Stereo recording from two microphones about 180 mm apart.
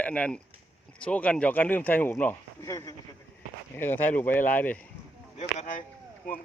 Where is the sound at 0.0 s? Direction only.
5° left (ahead or behind).